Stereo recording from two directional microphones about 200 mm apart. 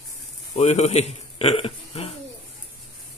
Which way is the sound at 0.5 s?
35° left (ahead or behind).